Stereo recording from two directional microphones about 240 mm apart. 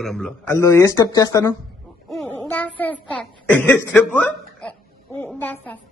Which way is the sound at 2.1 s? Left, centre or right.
Centre.